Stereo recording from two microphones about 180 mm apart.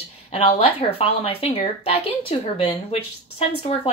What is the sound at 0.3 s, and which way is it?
A woman's voice, 30° left (ahead or behind).